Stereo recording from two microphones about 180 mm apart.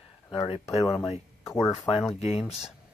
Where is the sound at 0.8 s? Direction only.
15° left (ahead or behind).